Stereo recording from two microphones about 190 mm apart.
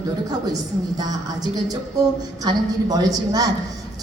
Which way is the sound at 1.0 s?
20° right (ahead or behind).